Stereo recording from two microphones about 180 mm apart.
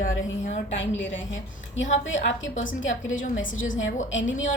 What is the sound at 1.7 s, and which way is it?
A woman's voice, 90° left.